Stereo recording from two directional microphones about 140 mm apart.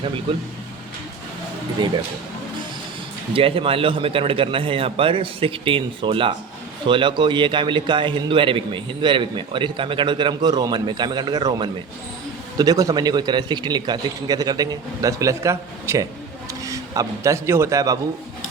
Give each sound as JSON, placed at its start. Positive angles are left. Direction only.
{"t": 3.3, "sound": "a man's voice", "side_deg": -40}